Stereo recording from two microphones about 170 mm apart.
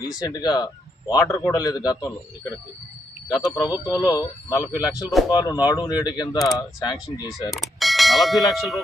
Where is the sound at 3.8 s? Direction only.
20° left (ahead or behind).